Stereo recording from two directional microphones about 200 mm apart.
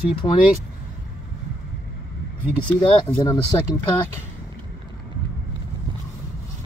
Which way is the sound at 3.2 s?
15° left (ahead or behind).